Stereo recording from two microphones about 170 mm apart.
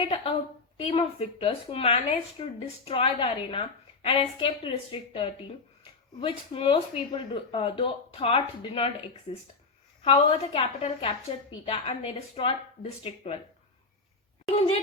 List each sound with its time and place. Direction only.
0.0 s a sound: 30° left (ahead or behind)
0.8 s speech: 35° left (ahead or behind)
10.0 s speech: 35° left (ahead or behind)